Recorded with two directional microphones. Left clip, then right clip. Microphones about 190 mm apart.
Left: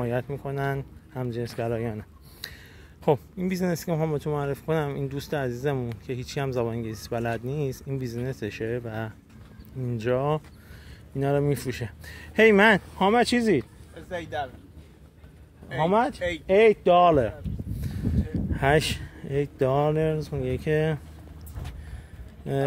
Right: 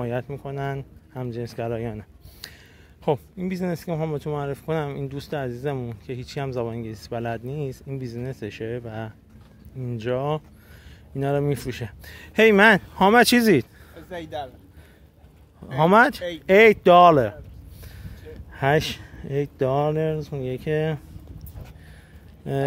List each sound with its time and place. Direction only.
0.0 s speech: 10° right (ahead or behind)
12.9 s speech: 25° right (ahead or behind)
13.9 s speech: 50° right (ahead or behind)
15.7 s speech: 40° right (ahead or behind)
17.1 s speech: 20° right (ahead or behind)
18.5 s speech: 10° right (ahead or behind)
22.4 s speech: 15° right (ahead or behind)